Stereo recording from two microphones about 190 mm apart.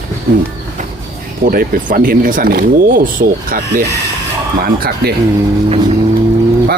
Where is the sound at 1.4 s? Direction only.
50° right (ahead or behind).